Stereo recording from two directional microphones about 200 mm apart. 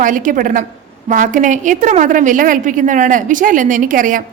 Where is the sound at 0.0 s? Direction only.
40° right (ahead or behind).